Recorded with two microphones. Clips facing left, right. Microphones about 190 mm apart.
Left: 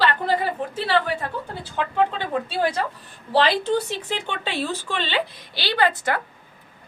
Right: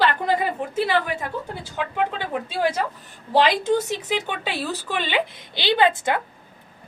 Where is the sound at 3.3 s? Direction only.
15° right (ahead or behind).